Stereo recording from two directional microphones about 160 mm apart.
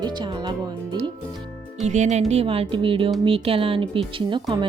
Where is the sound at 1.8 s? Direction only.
45° right (ahead or behind).